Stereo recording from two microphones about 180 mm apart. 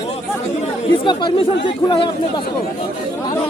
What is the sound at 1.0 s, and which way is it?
Speech, 25° left (ahead or behind).